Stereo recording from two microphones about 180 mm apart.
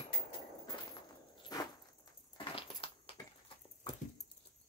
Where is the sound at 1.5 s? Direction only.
20° left (ahead or behind).